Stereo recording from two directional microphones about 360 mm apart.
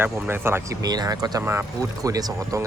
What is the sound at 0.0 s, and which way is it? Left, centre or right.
Speech, centre.